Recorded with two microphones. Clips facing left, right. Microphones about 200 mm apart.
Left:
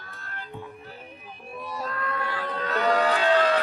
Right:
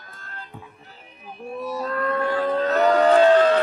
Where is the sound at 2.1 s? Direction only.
45° right (ahead or behind).